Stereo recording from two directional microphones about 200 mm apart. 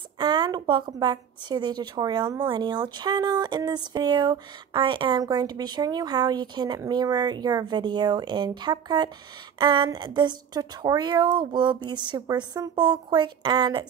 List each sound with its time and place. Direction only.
0.2 s a woman's voice: 20° right (ahead or behind)